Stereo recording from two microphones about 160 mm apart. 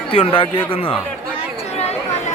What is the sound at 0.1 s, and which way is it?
Speech, 35° left (ahead or behind).